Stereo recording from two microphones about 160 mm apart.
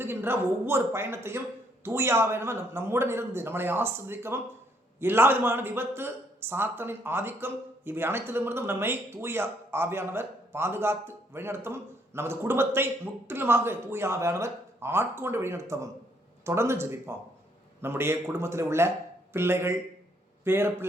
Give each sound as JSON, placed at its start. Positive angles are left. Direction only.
{"t": 0.0, "sound": "a man's voice", "side_deg": -15}